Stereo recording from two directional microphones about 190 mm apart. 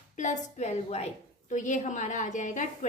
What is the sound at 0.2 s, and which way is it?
A woman's voice, 40° left (ahead or behind).